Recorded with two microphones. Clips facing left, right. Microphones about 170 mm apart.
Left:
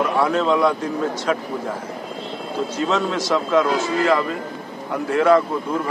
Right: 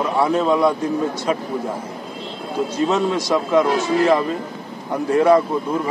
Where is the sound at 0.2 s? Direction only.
10° right (ahead or behind).